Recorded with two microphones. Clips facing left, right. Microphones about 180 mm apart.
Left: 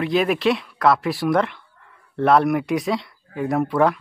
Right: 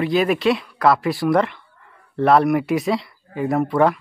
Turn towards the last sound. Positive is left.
turn(degrees=0)  # may be behind; listen again after turning